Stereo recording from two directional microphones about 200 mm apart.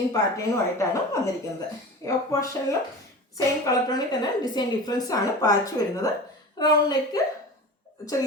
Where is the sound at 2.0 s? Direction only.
15° left (ahead or behind).